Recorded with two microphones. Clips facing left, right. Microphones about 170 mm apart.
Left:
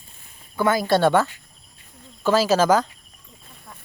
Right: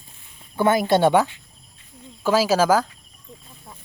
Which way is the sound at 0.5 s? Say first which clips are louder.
Right 1 dB; 25° right (ahead or behind).